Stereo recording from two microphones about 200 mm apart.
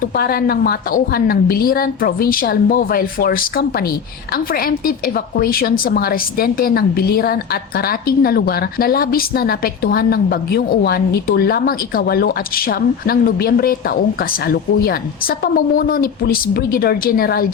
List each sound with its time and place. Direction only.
0.2 s a woman's voice: 50° left (ahead or behind)